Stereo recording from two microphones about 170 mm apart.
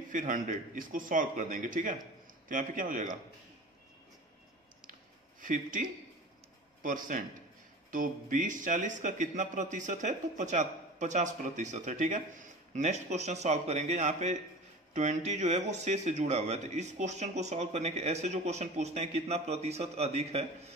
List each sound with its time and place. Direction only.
0.1 s speech: 50° right (ahead or behind)
5.4 s speech: 50° right (ahead or behind)